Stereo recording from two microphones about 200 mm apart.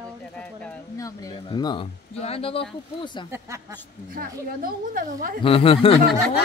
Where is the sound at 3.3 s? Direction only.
15° right (ahead or behind).